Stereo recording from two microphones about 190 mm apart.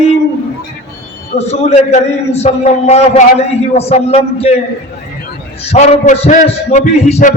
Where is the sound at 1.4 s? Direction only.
35° left (ahead or behind).